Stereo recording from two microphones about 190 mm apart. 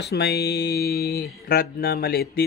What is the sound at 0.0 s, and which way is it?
Speech, 60° left (ahead or behind).